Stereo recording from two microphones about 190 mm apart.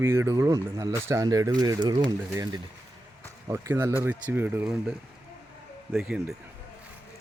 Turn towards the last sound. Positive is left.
turn(degrees=0)  # may be behind; listen again after turning